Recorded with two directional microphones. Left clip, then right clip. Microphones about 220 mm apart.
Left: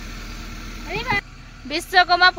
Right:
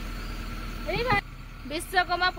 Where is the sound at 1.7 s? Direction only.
25° left (ahead or behind).